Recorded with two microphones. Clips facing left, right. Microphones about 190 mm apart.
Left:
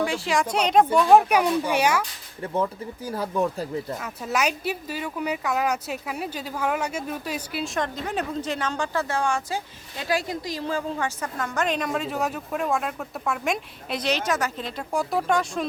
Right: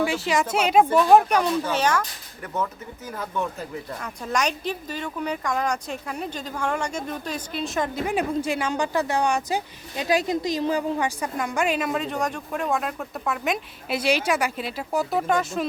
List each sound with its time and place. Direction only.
0.0 s speech: 5° right (ahead or behind)
2.4 s speech: 30° left (ahead or behind)
4.0 s speech: 5° left (ahead or behind)